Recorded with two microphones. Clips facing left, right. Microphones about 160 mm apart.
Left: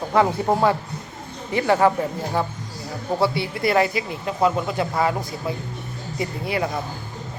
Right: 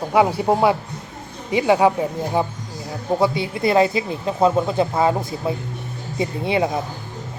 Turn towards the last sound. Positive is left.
turn(degrees=-20)  # may be behind; listen again after turning